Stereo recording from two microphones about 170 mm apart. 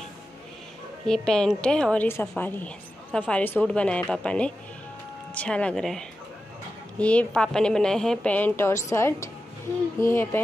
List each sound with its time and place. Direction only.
1.0 s a woman's voice: 5° left (ahead or behind)